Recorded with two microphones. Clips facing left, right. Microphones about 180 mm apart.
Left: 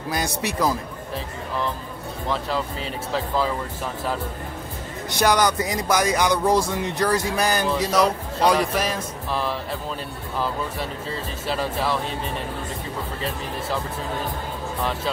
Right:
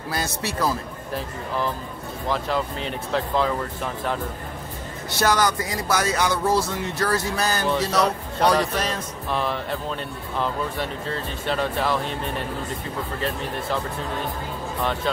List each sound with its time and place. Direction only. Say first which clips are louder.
0.1 s speech: left 2 dB; 15° left (ahead or behind)
2.2 s speech: right 1 dB; centre (ahead or behind)
5.1 s speech: left 2 dB; 15° left (ahead or behind)